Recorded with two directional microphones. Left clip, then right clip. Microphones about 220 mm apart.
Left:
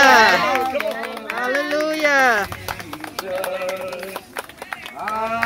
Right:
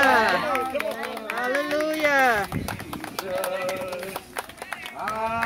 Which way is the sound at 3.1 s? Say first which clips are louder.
Left 3 dB; 50° right (ahead or behind).